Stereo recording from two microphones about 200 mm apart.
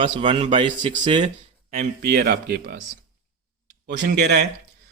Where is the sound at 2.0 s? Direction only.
55° right (ahead or behind).